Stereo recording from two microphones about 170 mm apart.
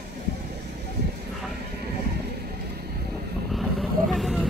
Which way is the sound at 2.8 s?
70° right (ahead or behind).